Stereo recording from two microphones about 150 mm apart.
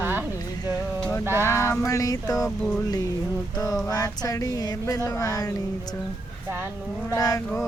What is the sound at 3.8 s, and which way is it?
Speech, 25° left (ahead or behind).